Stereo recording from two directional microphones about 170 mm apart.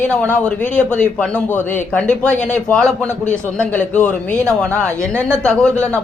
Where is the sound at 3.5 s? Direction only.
5° left (ahead or behind).